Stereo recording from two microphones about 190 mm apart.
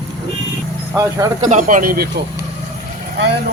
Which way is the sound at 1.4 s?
40° right (ahead or behind).